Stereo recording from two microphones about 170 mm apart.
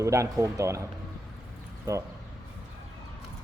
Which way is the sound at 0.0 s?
15° right (ahead or behind).